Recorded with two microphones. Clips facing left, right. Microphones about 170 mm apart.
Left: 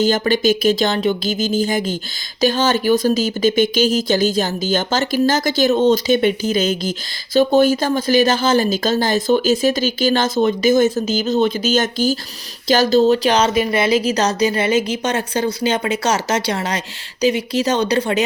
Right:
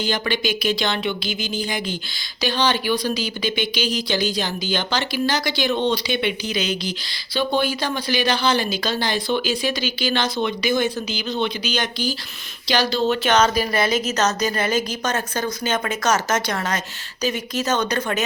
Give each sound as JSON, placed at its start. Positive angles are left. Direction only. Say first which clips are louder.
{"t": 0.0, "sound": "speech", "louder": "left 8 dB", "side_deg": 45}